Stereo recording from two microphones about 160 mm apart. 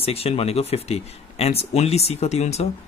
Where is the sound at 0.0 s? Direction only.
40° left (ahead or behind).